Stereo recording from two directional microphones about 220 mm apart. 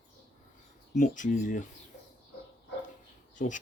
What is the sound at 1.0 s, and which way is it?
Speech, 35° left (ahead or behind).